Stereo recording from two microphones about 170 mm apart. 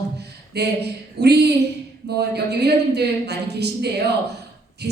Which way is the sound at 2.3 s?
75° right (ahead or behind).